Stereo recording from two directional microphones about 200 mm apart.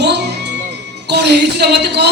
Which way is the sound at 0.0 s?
60° right (ahead or behind).